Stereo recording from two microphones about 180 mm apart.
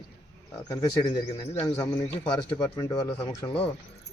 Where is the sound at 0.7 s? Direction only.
20° left (ahead or behind).